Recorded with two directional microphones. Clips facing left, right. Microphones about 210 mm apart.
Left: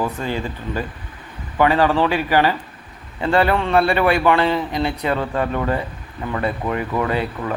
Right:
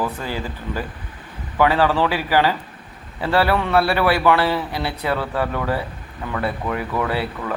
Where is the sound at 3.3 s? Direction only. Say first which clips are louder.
Left 1 dB; 20° left (ahead or behind).